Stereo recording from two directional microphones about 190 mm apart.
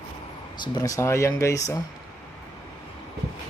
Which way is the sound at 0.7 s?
15° left (ahead or behind).